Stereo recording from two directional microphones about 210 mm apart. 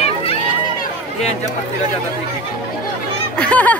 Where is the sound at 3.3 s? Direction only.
5° left (ahead or behind).